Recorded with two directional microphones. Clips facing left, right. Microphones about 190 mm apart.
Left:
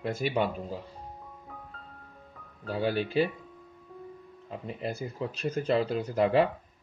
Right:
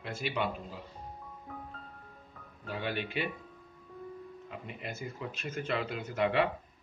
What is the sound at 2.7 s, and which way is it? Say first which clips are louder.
Speech: left 7 dB; 35° left (ahead or behind).